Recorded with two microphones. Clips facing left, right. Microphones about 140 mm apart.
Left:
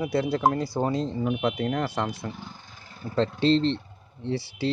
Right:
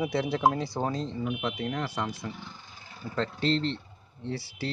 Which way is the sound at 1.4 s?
55° left (ahead or behind).